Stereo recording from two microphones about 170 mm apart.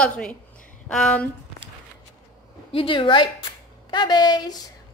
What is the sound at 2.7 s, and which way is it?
A woman's voice, 30° left (ahead or behind).